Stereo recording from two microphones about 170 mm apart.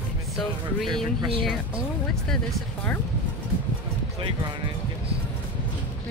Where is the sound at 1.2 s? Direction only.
30° right (ahead or behind).